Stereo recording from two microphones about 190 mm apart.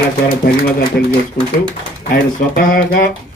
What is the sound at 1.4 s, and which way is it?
Speech, 55° left (ahead or behind).